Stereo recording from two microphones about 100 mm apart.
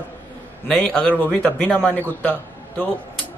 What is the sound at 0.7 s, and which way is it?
A man's voice, 5° left (ahead or behind).